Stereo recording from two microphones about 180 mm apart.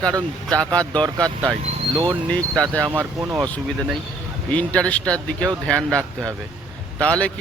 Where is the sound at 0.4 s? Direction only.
5° left (ahead or behind).